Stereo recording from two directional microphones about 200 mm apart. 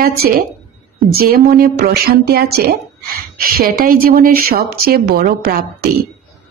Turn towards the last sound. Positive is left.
turn(degrees=-50)  # may be behind; listen again after turning